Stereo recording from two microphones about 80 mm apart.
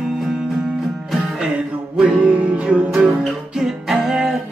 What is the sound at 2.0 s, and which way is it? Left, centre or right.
Music, centre.